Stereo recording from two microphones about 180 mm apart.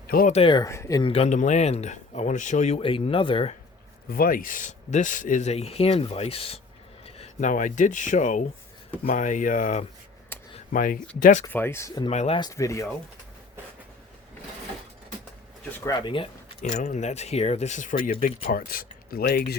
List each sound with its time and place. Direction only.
0.1 s speech: 50° left (ahead or behind)
0.3 s speech: 25° left (ahead or behind)
1.1 s speech: 40° left (ahead or behind)
4.1 s speech: 55° left (ahead or behind)
10.3 s a sound: 10° left (ahead or behind)
10.7 s speech: 50° left (ahead or behind)
11.4 s speech: 10° left (ahead or behind)
12.0 s speech: 35° left (ahead or behind)
12.4 s speech: 20° left (ahead or behind)
15.8 s speech: 20° left (ahead or behind)
16.6 s speech: 40° left (ahead or behind); by 19.5 s 60° left (ahead or behind)